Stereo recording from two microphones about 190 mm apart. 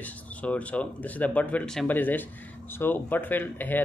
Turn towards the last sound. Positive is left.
turn(degrees=10)  # may be behind; listen again after turning